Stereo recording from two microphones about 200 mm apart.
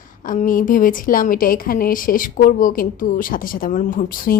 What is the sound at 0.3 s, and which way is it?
A woman's voice, 45° left (ahead or behind).